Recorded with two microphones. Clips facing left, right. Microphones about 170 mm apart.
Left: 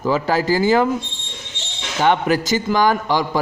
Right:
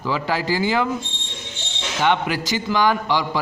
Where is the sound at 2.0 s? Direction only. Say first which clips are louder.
Left 4 dB; 45° left (ahead or behind).